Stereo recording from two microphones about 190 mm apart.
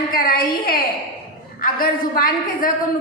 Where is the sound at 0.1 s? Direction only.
50° left (ahead or behind).